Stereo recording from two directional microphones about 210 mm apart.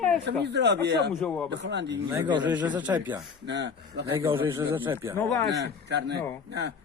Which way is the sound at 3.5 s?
55° right (ahead or behind).